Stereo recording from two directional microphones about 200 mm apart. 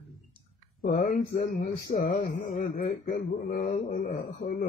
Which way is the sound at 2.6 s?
45° left (ahead or behind).